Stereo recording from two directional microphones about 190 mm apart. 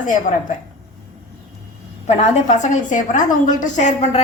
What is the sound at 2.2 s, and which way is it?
A woman's voice, 40° left (ahead or behind).